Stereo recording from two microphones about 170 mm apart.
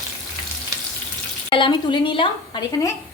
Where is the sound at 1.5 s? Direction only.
30° left (ahead or behind).